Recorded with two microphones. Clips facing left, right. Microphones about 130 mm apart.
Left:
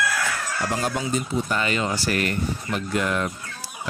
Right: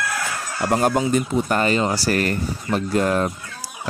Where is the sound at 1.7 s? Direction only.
35° right (ahead or behind).